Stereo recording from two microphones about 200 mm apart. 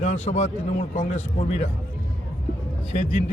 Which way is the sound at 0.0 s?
35° left (ahead or behind).